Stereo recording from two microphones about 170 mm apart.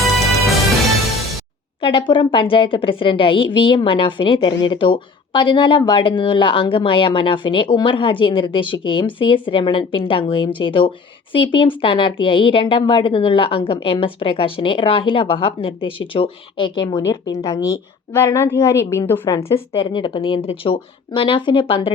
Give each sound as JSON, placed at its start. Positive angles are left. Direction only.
{"t": 1.8, "sound": "a woman's voice", "side_deg": 30}
{"t": 17.1, "sound": "a woman's voice", "side_deg": 20}
{"t": 19.5, "sound": "a woman's voice", "side_deg": 30}